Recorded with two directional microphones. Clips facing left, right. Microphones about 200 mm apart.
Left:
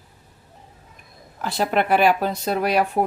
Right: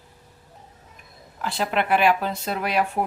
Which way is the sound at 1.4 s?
40° left (ahead or behind).